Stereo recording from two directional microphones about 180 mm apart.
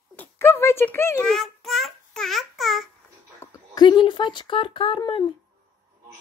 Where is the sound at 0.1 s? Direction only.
10° left (ahead or behind).